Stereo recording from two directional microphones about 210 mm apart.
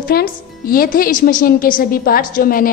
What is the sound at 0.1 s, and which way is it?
A woman's voice, 45° left (ahead or behind).